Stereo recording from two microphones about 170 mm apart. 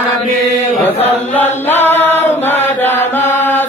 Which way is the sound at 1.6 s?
10° left (ahead or behind).